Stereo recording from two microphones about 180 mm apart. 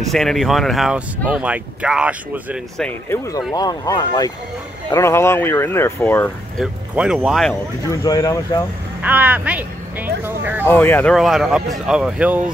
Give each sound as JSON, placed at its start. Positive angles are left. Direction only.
{"t": 0.1, "sound": "speech", "side_deg": 0}
{"t": 2.8, "sound": "speech", "side_deg": 15}
{"t": 6.6, "sound": "speech", "side_deg": -5}
{"t": 7.9, "sound": "speech", "side_deg": 20}
{"t": 9.0, "sound": "a sound", "side_deg": -10}
{"t": 10.6, "sound": "speech", "side_deg": 10}
{"t": 11.1, "sound": "speech", "side_deg": 0}